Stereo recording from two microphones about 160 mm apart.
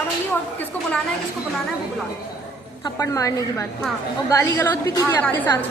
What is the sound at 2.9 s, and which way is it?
A woman's voice, 20° left (ahead or behind).